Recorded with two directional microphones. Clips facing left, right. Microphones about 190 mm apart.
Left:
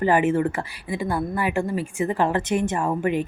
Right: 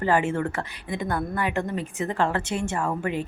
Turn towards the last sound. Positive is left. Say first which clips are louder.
# left 4 dB
turn(degrees=20)  # may be behind; listen again after turning